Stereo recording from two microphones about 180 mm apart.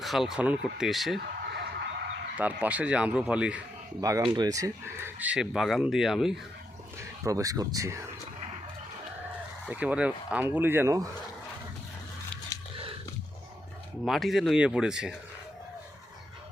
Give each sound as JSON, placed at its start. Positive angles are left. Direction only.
{"t": 0.0, "sound": "speech", "side_deg": 0}
{"t": 1.2, "sound": "a sound", "side_deg": -60}
{"t": 2.4, "sound": "speech", "side_deg": -10}
{"t": 4.0, "sound": "speech", "side_deg": -20}
{"t": 7.3, "sound": "speech", "side_deg": -20}
{"t": 9.6, "sound": "speech", "side_deg": -5}
{"t": 14.0, "sound": "speech", "side_deg": 0}